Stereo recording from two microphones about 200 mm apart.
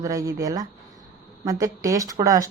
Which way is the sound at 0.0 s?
15° right (ahead or behind).